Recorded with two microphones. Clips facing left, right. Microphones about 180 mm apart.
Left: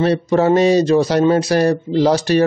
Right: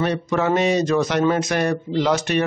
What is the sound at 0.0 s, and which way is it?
Speech, 35° left (ahead or behind).